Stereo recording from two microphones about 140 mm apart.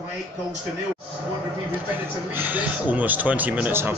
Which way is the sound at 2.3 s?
15° right (ahead or behind).